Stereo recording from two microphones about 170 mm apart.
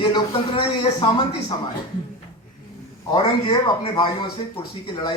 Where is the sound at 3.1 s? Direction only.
30° left (ahead or behind).